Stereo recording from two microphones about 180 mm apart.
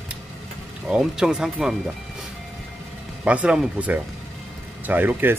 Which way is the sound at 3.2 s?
5° right (ahead or behind).